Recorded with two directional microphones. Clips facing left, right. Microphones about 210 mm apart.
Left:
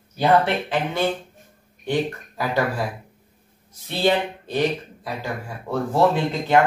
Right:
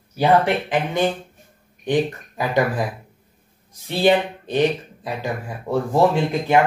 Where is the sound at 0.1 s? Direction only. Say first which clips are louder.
Right 2 dB; 15° right (ahead or behind).